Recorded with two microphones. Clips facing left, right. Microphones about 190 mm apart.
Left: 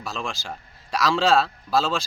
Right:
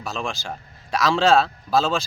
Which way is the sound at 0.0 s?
Centre (ahead or behind).